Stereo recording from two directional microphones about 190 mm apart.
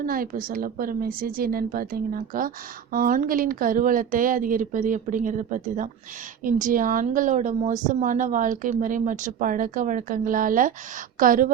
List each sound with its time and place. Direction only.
0.0 s a woman's voice: 50° right (ahead or behind)